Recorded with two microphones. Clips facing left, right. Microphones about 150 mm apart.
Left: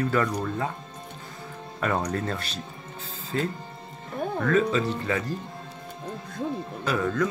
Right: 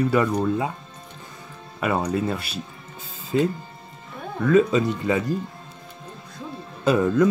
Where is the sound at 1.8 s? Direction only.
10° right (ahead or behind).